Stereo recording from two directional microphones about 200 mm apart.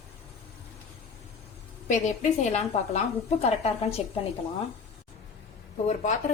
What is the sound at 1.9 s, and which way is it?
A woman's voice, 35° left (ahead or behind).